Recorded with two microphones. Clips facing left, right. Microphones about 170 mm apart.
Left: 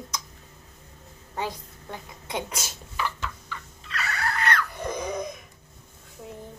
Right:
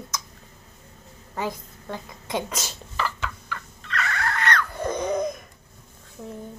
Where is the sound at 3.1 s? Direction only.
90° right.